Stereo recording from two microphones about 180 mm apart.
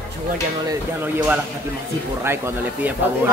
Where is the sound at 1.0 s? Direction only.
10° right (ahead or behind).